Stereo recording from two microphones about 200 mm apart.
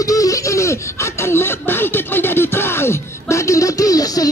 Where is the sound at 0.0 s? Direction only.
15° left (ahead or behind).